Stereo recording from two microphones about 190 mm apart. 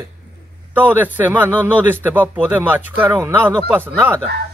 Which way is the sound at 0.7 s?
10° right (ahead or behind).